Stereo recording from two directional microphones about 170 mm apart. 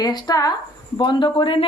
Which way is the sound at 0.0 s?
25° left (ahead or behind).